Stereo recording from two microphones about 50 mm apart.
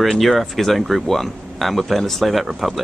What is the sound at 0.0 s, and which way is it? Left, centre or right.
Speech, centre.